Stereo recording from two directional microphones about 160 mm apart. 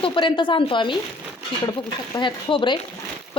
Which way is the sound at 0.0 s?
30° left (ahead or behind).